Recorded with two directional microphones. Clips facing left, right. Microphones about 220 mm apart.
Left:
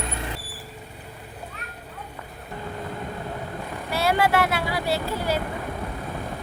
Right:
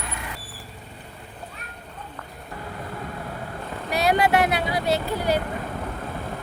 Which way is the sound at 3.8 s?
20° right (ahead or behind).